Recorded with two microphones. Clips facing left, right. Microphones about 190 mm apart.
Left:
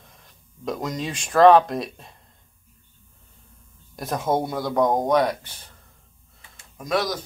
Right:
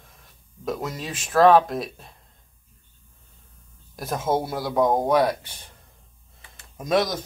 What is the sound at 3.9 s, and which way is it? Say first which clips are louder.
Speech: left 1 dB; 5° right (ahead or behind).